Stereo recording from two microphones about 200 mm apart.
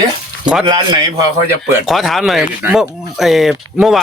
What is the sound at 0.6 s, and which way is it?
Speech, 20° right (ahead or behind).